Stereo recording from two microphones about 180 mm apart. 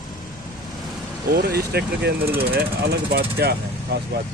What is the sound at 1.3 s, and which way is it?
Speech, 60° right (ahead or behind).